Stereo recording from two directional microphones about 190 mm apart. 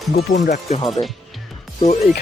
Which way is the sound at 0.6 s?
35° left (ahead or behind).